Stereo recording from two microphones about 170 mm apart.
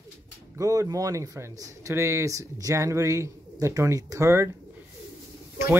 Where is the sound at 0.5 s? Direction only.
20° right (ahead or behind).